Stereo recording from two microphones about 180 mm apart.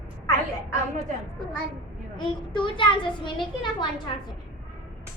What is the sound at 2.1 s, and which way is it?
A child's voice, 25° left (ahead or behind).